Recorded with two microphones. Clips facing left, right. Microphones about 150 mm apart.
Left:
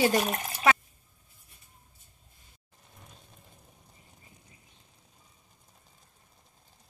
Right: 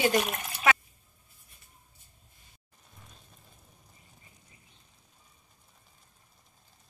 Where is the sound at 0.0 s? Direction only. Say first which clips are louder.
Left 1 dB; 35° left (ahead or behind).